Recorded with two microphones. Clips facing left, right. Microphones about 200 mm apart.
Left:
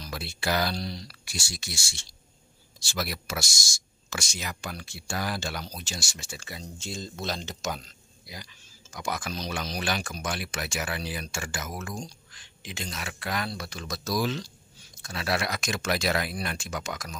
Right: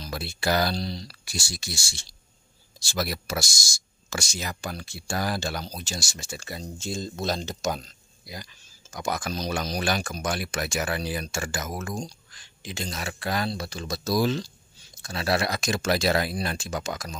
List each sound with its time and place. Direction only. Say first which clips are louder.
0.0 s speech: right 3 dB; 40° right (ahead or behind)
8.9 s speech: right 3 dB; 40° right (ahead or behind)